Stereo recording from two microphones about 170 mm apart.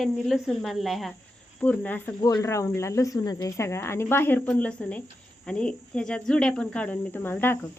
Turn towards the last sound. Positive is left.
turn(degrees=15)  # may be behind; listen again after turning